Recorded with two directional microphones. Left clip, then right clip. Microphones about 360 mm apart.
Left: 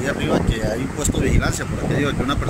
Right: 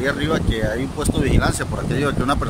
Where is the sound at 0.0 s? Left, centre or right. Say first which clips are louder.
Even; centre.